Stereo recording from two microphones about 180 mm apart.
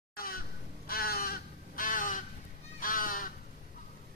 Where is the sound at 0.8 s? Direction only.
55° left (ahead or behind).